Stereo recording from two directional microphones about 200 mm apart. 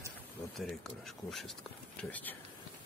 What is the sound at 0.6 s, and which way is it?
Speech, centre (ahead or behind).